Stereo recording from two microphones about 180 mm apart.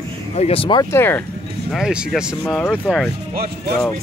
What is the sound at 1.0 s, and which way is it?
Speech, 10° left (ahead or behind).